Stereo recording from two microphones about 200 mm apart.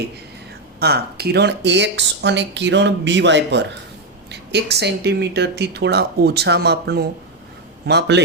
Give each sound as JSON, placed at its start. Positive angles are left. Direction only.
{"t": 0.8, "sound": "speech", "side_deg": -50}